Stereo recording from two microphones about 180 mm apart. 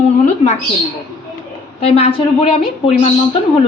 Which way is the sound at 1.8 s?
35° left (ahead or behind).